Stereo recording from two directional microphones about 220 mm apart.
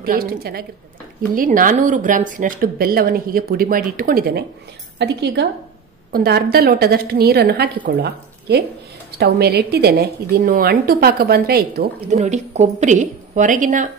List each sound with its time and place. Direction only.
0.0 s a woman's voice: 40° right (ahead or behind)